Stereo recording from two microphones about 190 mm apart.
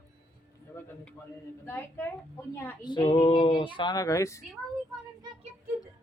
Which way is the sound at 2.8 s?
25° left (ahead or behind).